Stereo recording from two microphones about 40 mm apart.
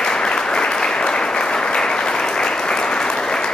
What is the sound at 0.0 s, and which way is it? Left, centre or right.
Applause, centre.